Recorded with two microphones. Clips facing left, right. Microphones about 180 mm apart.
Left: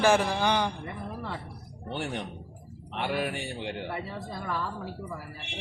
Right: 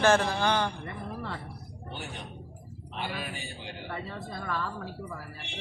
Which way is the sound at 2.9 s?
65° left (ahead or behind).